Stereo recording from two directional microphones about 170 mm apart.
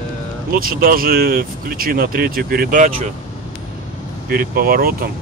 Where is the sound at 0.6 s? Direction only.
60° right (ahead or behind).